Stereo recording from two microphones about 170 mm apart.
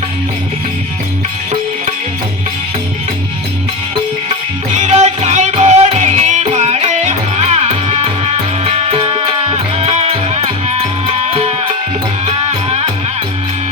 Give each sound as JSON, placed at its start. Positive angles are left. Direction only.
{"t": 4.8, "sound": "music", "side_deg": -40}